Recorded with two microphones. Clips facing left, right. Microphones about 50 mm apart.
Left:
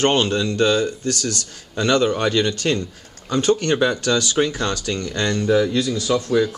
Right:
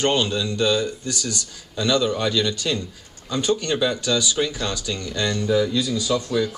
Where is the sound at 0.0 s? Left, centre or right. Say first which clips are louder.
Left 3 dB; left.